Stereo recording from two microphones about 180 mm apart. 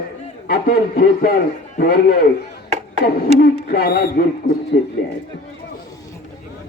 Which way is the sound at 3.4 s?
60° left (ahead or behind).